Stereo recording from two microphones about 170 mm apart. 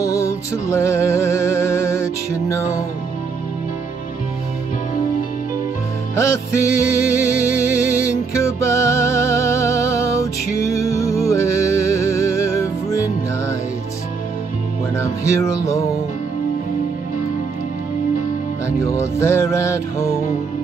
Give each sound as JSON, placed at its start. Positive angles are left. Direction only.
{"t": 0.0, "sound": "music", "side_deg": 20}
{"t": 6.1, "sound": "music", "side_deg": 15}
{"t": 15.0, "sound": "music", "side_deg": 20}
{"t": 18.8, "sound": "music", "side_deg": 15}